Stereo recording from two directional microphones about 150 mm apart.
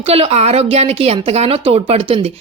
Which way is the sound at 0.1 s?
40° right (ahead or behind).